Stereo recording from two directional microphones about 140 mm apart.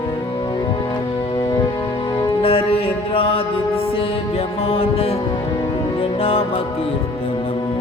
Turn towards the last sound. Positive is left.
turn(degrees=45)  # may be behind; listen again after turning